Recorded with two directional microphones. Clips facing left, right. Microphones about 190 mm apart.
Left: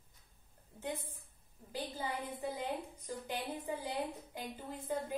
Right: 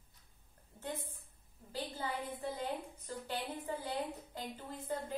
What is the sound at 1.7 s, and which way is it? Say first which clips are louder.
A woman's voice: even; 10° left (ahead or behind).